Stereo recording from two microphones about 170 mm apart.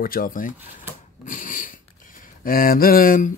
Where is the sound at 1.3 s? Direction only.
50° left (ahead or behind).